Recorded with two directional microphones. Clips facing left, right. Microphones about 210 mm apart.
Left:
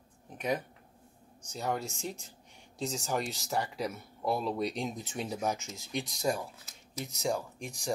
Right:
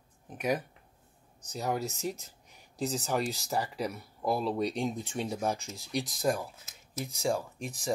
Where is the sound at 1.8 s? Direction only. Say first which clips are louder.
Right 4 dB; 35° right (ahead or behind).